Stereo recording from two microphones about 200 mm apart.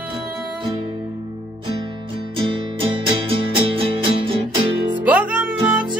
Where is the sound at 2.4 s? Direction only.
25° right (ahead or behind).